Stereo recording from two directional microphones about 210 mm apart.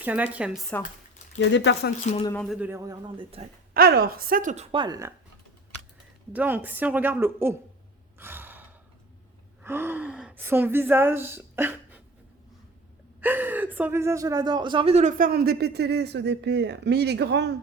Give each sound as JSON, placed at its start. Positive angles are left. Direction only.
{"t": 0.0, "sound": "speech", "side_deg": -5}
{"t": 1.4, "sound": "speech", "side_deg": 55}
{"t": 2.3, "sound": "speech", "side_deg": 5}
{"t": 2.6, "sound": "speech", "side_deg": -10}
{"t": 3.8, "sound": "a woman's voice", "side_deg": -45}
{"t": 6.3, "sound": "speech", "side_deg": -10}
{"t": 8.2, "sound": "sigh", "side_deg": -10}
{"t": 9.6, "sound": "speech", "side_deg": -10}
{"t": 13.2, "sound": "speech", "side_deg": -10}